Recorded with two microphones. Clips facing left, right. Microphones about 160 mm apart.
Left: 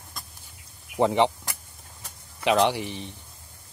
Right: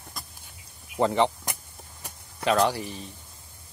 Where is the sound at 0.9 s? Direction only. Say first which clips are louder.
Left 2 dB; 20° left (ahead or behind).